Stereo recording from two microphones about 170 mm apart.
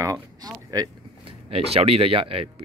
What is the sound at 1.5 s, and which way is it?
Speech, 35° right (ahead or behind).